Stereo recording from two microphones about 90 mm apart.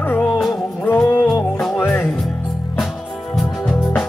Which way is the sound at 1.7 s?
20° left (ahead or behind).